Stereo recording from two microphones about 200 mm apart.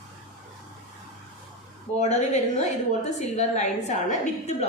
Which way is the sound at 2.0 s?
35° left (ahead or behind).